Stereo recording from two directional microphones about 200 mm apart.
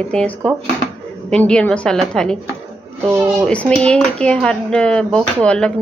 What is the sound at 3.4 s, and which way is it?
A woman's voice, 5° left (ahead or behind).